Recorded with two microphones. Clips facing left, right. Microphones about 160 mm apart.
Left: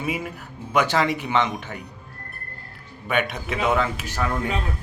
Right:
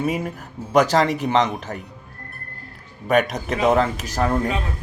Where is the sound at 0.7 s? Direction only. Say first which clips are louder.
Right 4 dB; 40° right (ahead or behind).